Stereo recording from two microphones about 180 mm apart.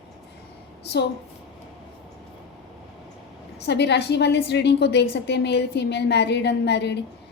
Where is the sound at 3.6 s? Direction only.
70° left (ahead or behind).